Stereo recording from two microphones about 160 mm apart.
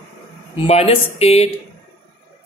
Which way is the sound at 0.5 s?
35° left (ahead or behind).